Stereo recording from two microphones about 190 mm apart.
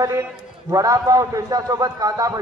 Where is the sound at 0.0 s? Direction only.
15° right (ahead or behind).